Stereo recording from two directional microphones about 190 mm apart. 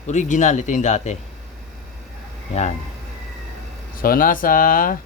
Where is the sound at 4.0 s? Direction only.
50° left (ahead or behind).